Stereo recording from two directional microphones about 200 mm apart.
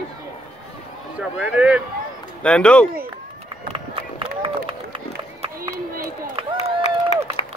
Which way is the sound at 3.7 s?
25° right (ahead or behind).